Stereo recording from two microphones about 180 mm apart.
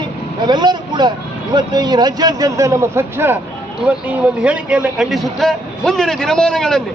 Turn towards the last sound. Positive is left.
turn(degrees=5)  # may be behind; listen again after turning